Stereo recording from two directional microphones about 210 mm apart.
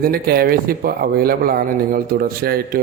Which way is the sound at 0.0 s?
45° right (ahead or behind).